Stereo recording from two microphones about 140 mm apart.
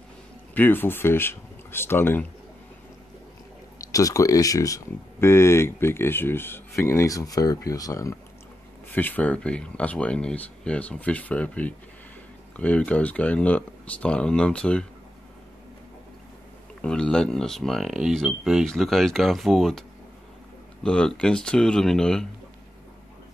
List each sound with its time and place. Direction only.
0.6 s speech: 15° left (ahead or behind)
3.7 s speech: 25° left (ahead or behind)
8.9 s speech: 10° left (ahead or behind)
16.8 s speech: 5° left (ahead or behind)
20.8 s speech: 5° left (ahead or behind)